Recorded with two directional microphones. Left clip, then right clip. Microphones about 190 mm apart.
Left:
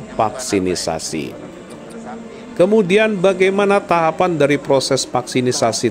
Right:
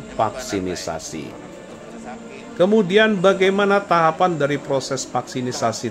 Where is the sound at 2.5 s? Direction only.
30° left (ahead or behind).